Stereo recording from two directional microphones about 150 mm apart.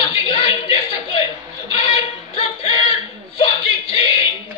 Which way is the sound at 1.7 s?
35° left (ahead or behind).